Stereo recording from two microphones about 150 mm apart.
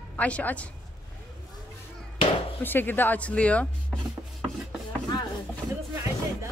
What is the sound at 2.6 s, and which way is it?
Speech, 15° left (ahead or behind).